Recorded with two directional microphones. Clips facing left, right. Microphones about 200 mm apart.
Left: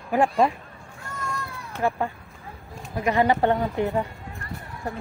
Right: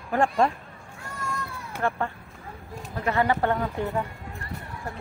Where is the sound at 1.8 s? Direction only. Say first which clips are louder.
Left 3 dB; 10° left (ahead or behind).